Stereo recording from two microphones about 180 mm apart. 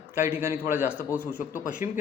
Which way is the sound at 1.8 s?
10° right (ahead or behind).